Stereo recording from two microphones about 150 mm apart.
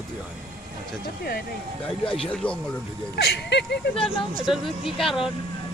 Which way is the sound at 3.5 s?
90° left.